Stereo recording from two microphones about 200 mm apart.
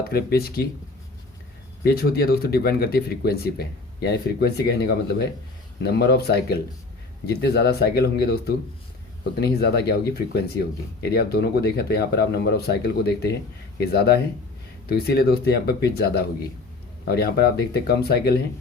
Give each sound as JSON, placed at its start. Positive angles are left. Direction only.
{"t": 0.1, "sound": "speech", "side_deg": 50}
{"t": 1.8, "sound": "speech", "side_deg": 50}